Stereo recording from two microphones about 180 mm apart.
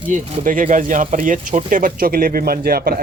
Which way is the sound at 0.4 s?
45° right (ahead or behind).